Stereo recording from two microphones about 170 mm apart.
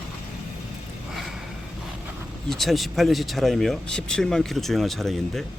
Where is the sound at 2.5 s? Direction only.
Centre (ahead or behind).